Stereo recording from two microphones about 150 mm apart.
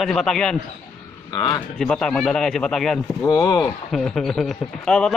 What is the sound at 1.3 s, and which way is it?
Speech, 25° left (ahead or behind).